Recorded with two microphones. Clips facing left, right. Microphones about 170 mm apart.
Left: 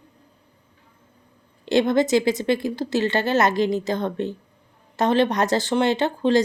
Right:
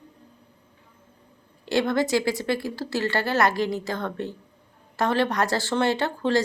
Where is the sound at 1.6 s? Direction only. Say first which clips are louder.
Left 4 dB; 20° left (ahead or behind).